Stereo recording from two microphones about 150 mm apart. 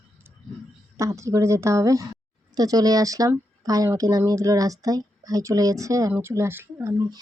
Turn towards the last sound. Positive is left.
turn(degrees=-15)  # may be behind; listen again after turning